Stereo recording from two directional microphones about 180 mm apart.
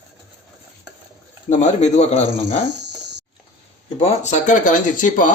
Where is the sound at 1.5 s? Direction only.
40° left (ahead or behind).